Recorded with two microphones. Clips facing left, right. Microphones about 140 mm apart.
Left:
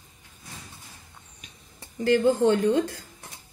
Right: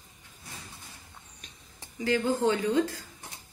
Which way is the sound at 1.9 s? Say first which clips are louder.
Left 6 dB; 60° left (ahead or behind).